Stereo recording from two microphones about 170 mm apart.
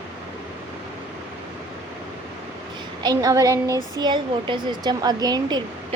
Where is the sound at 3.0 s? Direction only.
20° right (ahead or behind).